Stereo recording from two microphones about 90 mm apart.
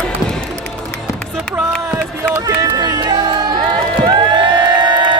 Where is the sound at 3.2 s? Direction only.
55° right (ahead or behind).